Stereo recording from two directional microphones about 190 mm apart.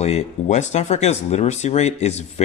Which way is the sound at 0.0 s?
35° left (ahead or behind).